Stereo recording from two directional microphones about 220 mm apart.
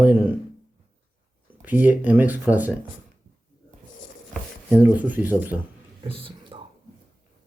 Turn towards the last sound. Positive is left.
turn(degrees=-25)  # may be behind; listen again after turning